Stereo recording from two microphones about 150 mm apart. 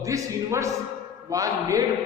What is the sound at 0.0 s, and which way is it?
A man's voice, 20° right (ahead or behind).